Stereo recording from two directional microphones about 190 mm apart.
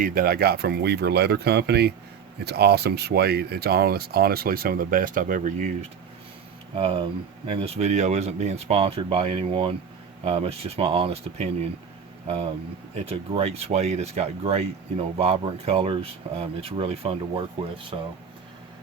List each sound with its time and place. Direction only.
0.0 s speech: 50° right (ahead or behind)
6.7 s speech: 30° right (ahead or behind)
13.1 s speech: 30° right (ahead or behind)